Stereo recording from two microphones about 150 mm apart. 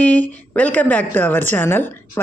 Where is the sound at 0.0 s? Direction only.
10° left (ahead or behind).